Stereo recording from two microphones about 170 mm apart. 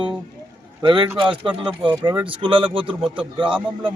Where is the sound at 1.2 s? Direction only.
30° right (ahead or behind).